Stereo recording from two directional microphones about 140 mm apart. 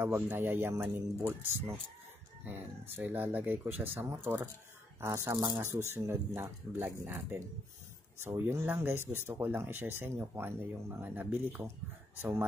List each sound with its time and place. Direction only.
0.0 s speech: 15° right (ahead or behind)